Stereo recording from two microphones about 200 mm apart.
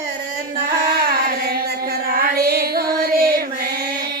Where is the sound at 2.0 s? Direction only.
50° right (ahead or behind).